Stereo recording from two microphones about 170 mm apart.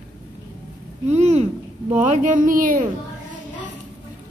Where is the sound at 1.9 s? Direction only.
45° right (ahead or behind).